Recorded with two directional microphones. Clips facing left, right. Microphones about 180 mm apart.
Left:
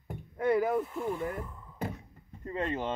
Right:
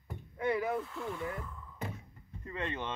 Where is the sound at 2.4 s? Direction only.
35° left (ahead or behind).